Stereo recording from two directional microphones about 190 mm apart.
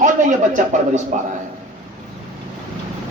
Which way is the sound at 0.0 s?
40° right (ahead or behind).